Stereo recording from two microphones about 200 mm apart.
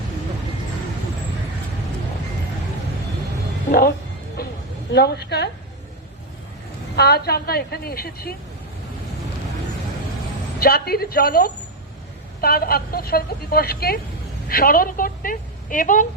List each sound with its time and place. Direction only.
3.7 s speech: 50° left (ahead or behind)
4.4 s a sound: 50° left (ahead or behind)
4.9 s a woman's voice: 55° left (ahead or behind)
6.9 s a woman's voice: 55° left (ahead or behind)
10.6 s a woman's voice: 50° left (ahead or behind)